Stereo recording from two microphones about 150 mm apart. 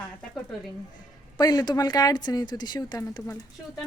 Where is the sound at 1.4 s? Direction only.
25° left (ahead or behind).